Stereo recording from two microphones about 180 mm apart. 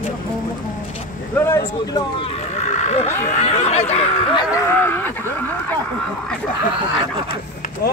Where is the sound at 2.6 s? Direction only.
40° left (ahead or behind).